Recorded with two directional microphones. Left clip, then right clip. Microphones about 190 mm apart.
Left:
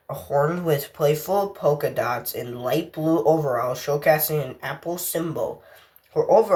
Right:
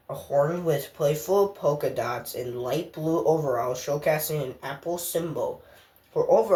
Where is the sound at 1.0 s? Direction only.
15° left (ahead or behind).